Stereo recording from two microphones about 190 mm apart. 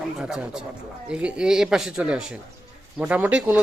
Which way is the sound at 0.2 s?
5° right (ahead or behind).